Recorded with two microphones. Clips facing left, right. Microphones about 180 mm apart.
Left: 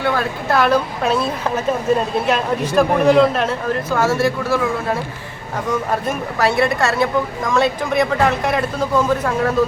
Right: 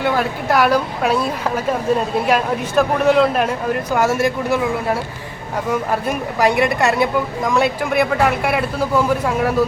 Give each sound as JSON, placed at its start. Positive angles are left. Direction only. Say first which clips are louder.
{"t": 0.0, "sound": "speech", "louder": "right 1 dB", "side_deg": -15}
{"t": 2.2, "sound": "a man's voice", "louder": "right 1 dB", "side_deg": -5}
{"t": 3.9, "sound": "speech", "louder": "even", "side_deg": -15}
{"t": 5.7, "sound": "speech", "louder": "even", "side_deg": -10}